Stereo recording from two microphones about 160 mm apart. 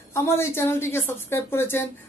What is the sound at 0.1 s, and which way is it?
A woman's voice, 15° left (ahead or behind).